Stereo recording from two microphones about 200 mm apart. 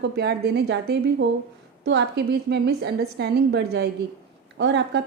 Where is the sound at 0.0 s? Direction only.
55° right (ahead or behind).